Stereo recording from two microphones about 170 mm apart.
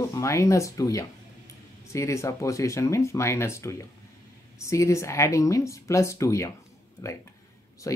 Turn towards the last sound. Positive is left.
turn(degrees=20)  # may be behind; listen again after turning